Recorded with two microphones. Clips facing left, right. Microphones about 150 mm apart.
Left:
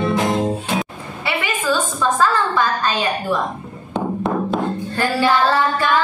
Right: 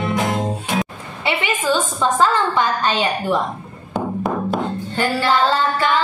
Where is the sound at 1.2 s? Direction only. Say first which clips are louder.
Right 1 dB; 25° right (ahead or behind).